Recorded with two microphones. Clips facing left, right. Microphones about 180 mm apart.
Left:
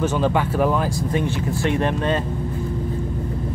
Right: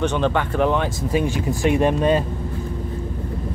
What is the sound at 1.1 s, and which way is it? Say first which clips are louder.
Speech: right 5 dB; 10° right (ahead or behind).